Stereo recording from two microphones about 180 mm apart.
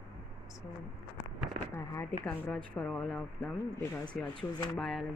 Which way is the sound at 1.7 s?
15° left (ahead or behind).